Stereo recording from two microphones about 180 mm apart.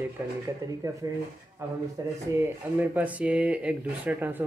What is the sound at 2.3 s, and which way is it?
Speech, 10° right (ahead or behind).